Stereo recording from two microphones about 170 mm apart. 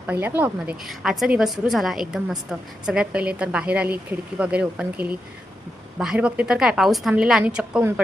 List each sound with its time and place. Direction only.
0.1 s a woman's voice: 10° right (ahead or behind)